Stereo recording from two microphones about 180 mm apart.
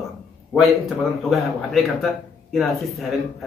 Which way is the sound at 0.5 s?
Centre (ahead or behind).